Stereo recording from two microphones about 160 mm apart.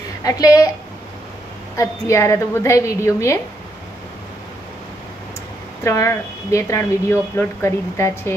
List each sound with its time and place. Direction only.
0.2 s a woman's voice: 20° left (ahead or behind)
1.8 s a woman's voice: 20° left (ahead or behind)
5.9 s speech: 20° left (ahead or behind)